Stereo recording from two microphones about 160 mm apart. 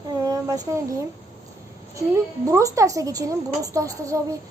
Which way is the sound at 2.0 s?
20° right (ahead or behind).